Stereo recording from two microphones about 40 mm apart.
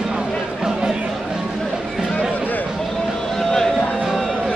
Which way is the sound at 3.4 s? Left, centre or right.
Centre.